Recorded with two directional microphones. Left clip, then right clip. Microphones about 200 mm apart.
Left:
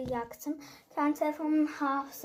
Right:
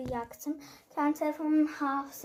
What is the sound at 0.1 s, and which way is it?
Speech, 5° right (ahead or behind).